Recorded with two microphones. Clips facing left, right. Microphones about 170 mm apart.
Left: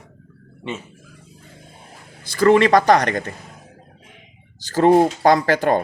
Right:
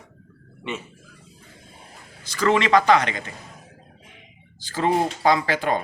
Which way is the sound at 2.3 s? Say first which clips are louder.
Left 5 dB; 35° left (ahead or behind).